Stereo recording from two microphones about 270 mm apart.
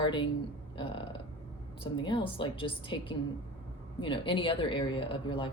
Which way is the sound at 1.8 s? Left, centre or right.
Centre.